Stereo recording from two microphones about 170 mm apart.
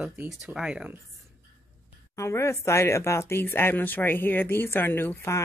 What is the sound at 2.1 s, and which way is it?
Speech, 15° left (ahead or behind).